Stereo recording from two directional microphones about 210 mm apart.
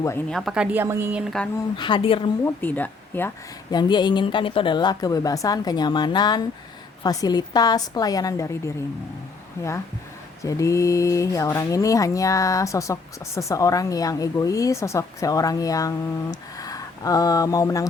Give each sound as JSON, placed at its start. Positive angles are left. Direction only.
{"t": 0.0, "sound": "speech", "side_deg": 10}
{"t": 0.3, "sound": "a woman's voice", "side_deg": 0}
{"t": 1.7, "sound": "a woman's voice", "side_deg": 20}
{"t": 2.4, "sound": "a woman's voice", "side_deg": 10}
{"t": 10.4, "sound": "speech", "side_deg": 15}
{"t": 16.3, "sound": "a sound", "side_deg": 15}